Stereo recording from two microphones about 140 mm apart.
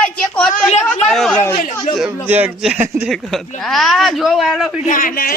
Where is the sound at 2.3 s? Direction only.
10° right (ahead or behind).